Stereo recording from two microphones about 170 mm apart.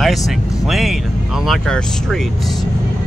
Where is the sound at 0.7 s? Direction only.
Centre (ahead or behind).